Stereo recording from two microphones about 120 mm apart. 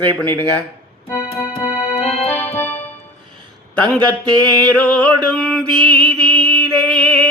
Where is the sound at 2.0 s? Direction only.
65° left (ahead or behind).